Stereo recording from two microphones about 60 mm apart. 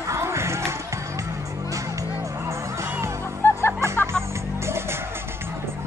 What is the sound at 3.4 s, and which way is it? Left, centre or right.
Music, left.